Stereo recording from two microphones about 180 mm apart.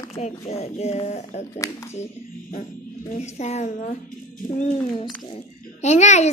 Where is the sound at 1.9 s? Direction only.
40° left (ahead or behind).